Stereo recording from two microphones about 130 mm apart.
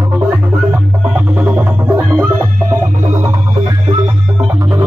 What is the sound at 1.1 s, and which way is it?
Music, 10° right (ahead or behind).